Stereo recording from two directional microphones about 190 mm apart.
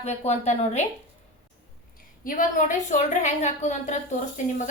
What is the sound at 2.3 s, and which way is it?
A woman's voice, 40° left (ahead or behind).